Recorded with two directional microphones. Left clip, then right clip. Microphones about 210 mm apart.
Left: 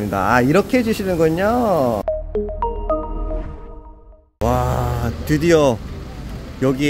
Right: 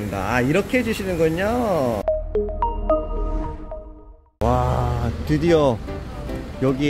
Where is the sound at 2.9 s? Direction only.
Centre (ahead or behind).